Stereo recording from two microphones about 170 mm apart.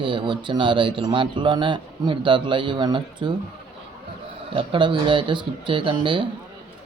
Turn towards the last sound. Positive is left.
turn(degrees=-30)  # may be behind; listen again after turning